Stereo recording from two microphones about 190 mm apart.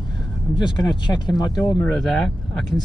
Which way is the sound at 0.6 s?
25° left (ahead or behind).